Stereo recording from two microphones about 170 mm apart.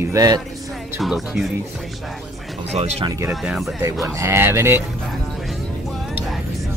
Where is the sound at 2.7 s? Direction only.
40° right (ahead or behind).